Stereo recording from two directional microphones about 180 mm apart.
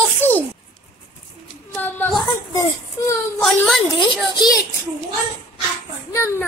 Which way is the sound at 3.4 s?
Centre (ahead or behind).